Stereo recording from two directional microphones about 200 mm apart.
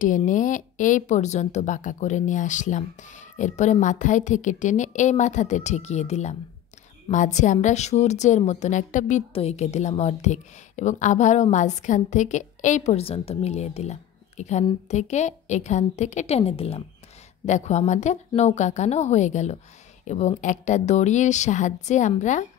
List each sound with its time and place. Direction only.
0.0 s a woman's voice: 40° left (ahead or behind)